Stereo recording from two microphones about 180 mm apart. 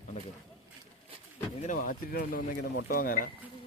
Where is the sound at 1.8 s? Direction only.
55° left (ahead or behind).